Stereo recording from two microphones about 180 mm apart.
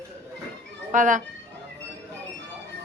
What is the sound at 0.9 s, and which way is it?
Speech, 45° right (ahead or behind).